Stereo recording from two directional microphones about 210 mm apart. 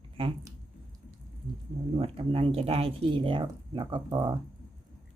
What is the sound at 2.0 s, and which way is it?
Speech, 25° right (ahead or behind).